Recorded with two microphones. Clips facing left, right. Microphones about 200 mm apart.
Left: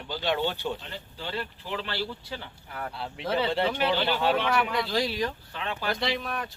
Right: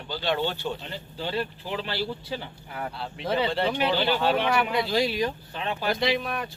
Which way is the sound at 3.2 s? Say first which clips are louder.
Right 1 dB; centre (ahead or behind).